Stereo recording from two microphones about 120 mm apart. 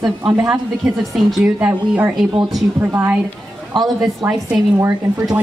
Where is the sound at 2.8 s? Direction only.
15° right (ahead or behind).